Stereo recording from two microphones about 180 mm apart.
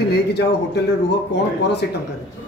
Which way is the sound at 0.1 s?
70° left (ahead or behind).